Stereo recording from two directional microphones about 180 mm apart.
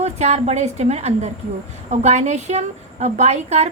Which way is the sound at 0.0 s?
35° right (ahead or behind).